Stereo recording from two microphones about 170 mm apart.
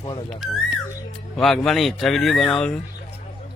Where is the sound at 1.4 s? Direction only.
Centre (ahead or behind).